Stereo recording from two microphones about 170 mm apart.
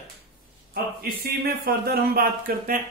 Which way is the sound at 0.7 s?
65° right (ahead or behind).